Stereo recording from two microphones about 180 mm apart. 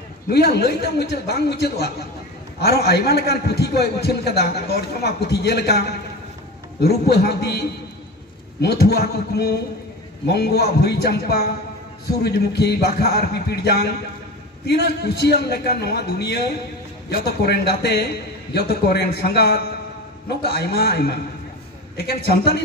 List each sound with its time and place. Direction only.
0.3 s a man's voice: 60° left (ahead or behind)